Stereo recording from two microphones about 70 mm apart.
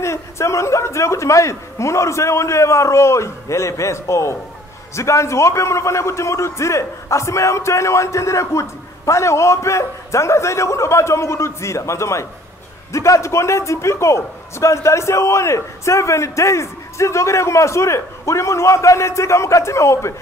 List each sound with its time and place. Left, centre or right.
0.0 s a man's voice: left